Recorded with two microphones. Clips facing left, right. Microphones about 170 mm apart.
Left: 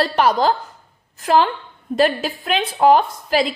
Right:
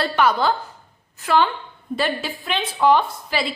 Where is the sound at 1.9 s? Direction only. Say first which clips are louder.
Left 6 dB; 40° left (ahead or behind).